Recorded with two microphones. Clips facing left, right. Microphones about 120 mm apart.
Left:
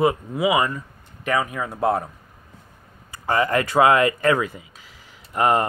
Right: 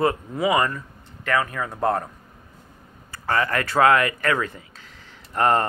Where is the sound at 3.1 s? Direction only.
15° left (ahead or behind).